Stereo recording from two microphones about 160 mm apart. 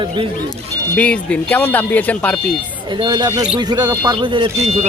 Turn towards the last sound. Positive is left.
turn(degrees=-35)  # may be behind; listen again after turning